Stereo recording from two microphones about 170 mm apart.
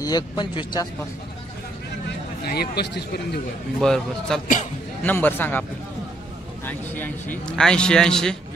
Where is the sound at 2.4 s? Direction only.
65° left (ahead or behind).